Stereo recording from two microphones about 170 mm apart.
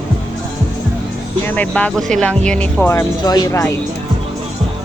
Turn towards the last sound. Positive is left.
turn(degrees=20)  # may be behind; listen again after turning